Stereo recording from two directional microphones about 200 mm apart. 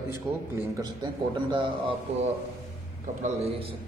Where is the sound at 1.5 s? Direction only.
25° right (ahead or behind).